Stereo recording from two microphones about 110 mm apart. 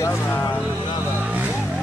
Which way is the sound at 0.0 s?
20° left (ahead or behind).